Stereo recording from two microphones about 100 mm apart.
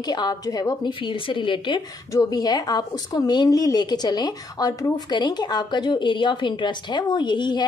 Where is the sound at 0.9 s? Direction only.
60° left (ahead or behind).